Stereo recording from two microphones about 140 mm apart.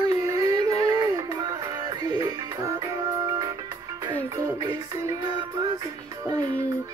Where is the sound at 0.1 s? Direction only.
25° right (ahead or behind).